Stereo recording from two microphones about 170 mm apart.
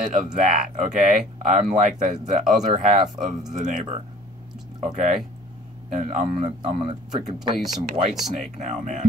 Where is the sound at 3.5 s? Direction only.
45° right (ahead or behind).